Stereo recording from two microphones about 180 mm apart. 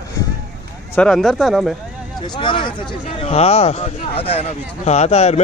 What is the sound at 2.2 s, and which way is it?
Speech, 25° left (ahead or behind).